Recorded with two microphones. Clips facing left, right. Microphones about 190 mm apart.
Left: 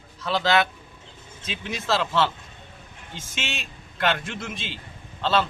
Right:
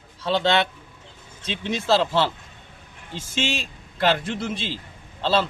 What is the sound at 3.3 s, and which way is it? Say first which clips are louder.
A man's voice: right 8 dB; 30° right (ahead or behind).